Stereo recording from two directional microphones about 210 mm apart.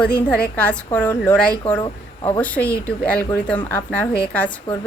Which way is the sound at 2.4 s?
5° left (ahead or behind).